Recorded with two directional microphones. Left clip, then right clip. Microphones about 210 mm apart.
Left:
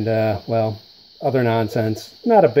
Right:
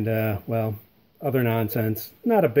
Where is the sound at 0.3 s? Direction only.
5° right (ahead or behind).